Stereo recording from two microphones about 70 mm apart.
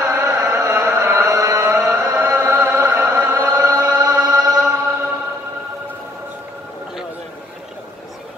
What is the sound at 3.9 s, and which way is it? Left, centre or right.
Music, right.